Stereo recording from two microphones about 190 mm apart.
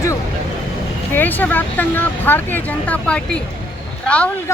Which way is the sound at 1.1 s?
10° left (ahead or behind).